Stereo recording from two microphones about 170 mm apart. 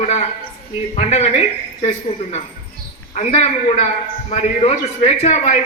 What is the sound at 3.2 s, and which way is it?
A man's voice, 40° left (ahead or behind).